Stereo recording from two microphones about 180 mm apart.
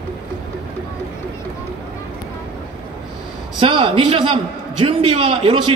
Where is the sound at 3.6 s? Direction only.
30° right (ahead or behind).